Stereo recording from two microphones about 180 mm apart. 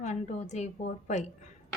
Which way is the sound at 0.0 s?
40° left (ahead or behind).